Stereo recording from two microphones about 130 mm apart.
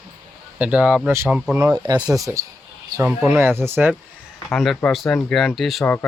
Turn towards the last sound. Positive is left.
turn(degrees=0)  # may be behind; listen again after turning